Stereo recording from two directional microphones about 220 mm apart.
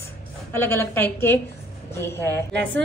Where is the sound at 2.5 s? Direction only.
55° right (ahead or behind).